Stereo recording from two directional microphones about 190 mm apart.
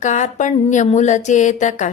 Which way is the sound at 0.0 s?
40° left (ahead or behind).